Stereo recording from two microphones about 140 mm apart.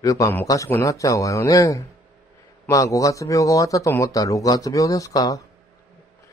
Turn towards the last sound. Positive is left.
turn(degrees=25)  # may be behind; listen again after turning